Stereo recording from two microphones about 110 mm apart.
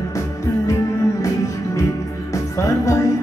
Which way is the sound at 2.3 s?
30° left (ahead or behind).